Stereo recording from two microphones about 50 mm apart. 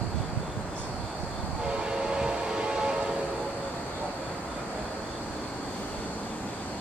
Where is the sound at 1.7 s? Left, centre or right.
Centre.